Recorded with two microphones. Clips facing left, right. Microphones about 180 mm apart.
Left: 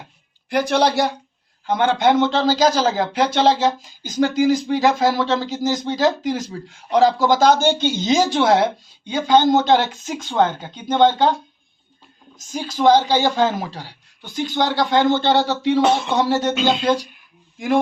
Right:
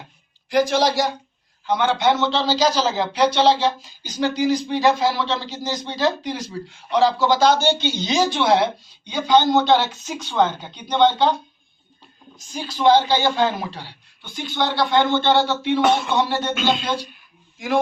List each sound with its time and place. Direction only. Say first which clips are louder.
0.5 s speech: even; 60° left (ahead or behind)
1.6 s a man's voice: left 2 dB; 50° left (ahead or behind)
10.2 s a man's voice: left 1 dB; 45° left (ahead or behind)
12.6 s a man's voice: left 1 dB; 40° left (ahead or behind)
16.6 s speech: left 2 dB; 20° left (ahead or behind)